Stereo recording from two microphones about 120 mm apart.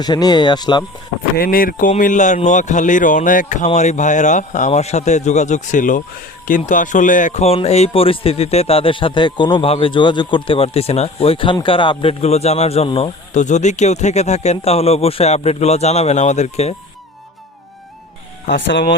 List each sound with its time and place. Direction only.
0.0 s speech: 35° left (ahead or behind)
2.0 s speech: 90° left; by 12.1 s 45° left (ahead or behind)
12.2 s speech: 60° left (ahead or behind)
13.4 s speech: 80° left